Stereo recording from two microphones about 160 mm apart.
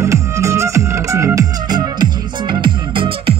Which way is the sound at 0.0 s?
20° right (ahead or behind).